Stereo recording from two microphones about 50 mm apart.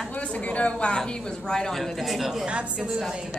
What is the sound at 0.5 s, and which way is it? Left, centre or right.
Speech, left.